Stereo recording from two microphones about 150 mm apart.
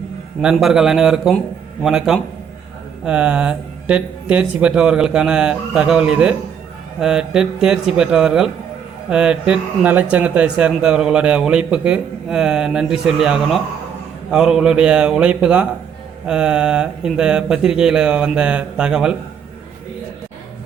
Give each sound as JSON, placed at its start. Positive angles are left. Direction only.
{"t": 0.4, "sound": "speech", "side_deg": -5}